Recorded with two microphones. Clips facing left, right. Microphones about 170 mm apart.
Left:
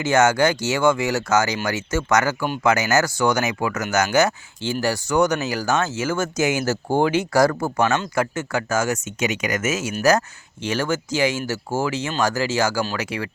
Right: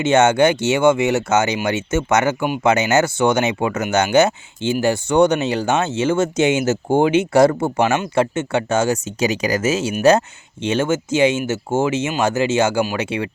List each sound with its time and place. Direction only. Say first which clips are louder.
0.0 s speech: right 4 dB; 25° right (ahead or behind)